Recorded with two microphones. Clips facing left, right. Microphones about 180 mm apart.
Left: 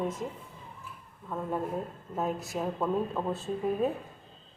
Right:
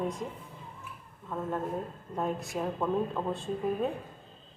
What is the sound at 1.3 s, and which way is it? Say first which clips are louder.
Speech: left 1 dB; 10° left (ahead or behind).